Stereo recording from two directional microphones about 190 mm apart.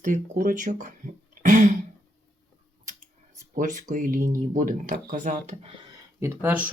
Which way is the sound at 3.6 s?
40° right (ahead or behind).